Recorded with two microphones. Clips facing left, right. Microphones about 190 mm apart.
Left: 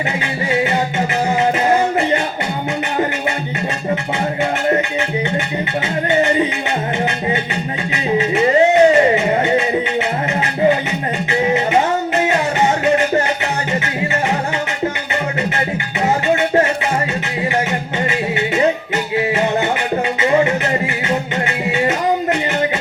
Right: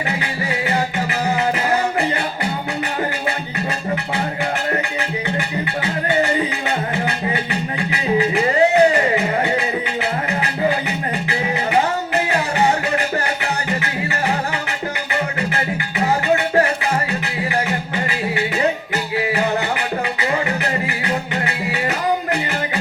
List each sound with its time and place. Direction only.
8.2 s music: 25° left (ahead or behind)
11.3 s music: 25° left (ahead or behind)
16.2 s music: 25° left (ahead or behind)
18.0 s a sound: 25° left (ahead or behind)
20.1 s music: 25° left (ahead or behind)